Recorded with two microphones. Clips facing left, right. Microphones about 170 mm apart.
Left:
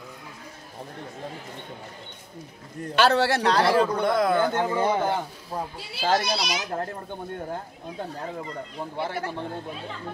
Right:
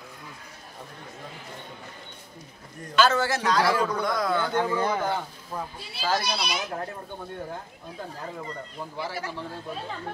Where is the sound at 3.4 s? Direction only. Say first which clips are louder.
Left 2 dB; 30° left (ahead or behind).